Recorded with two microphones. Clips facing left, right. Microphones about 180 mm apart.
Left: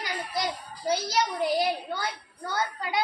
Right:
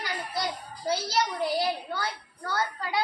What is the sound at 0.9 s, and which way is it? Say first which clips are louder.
A child's voice: left 1 dB; 20° left (ahead or behind).